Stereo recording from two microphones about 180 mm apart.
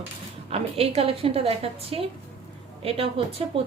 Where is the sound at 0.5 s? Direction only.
35° right (ahead or behind).